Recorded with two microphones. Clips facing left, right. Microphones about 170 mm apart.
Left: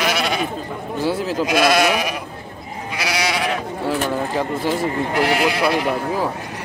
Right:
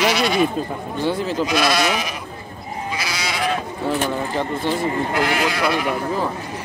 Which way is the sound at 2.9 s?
70° left (ahead or behind).